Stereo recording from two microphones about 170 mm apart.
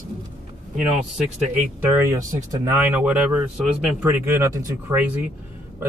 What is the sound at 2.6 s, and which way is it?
Speech, 10° right (ahead or behind).